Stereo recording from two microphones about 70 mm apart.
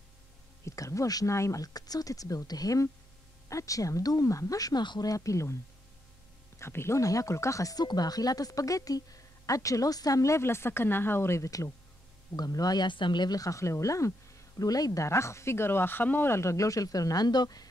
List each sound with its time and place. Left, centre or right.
0.7 s speech: left
5.1 s speech: left
6.6 s speech: left
7.0 s speech: left
7.8 s speech: left
12.4 s speech: left
14.6 s speech: left
15.0 s speech: left